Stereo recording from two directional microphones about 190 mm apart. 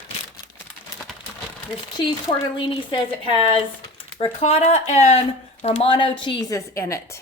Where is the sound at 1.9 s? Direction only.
25° left (ahead or behind).